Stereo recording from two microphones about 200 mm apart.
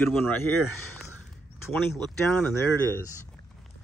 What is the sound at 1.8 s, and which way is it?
Speech, 10° left (ahead or behind).